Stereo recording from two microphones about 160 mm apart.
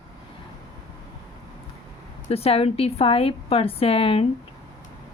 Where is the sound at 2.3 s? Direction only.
40° left (ahead or behind).